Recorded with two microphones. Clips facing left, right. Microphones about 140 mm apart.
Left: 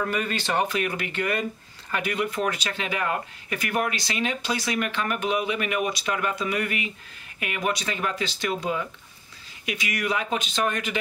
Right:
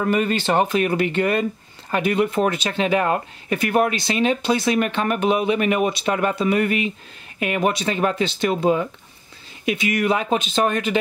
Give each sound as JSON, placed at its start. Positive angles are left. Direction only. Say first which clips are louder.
{"t": 0.0, "sound": "speech", "louder": "right 7 dB", "side_deg": -25}